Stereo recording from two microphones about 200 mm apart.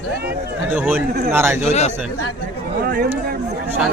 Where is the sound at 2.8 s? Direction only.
50° right (ahead or behind).